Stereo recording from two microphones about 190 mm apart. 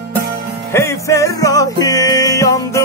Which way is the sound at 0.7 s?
15° left (ahead or behind).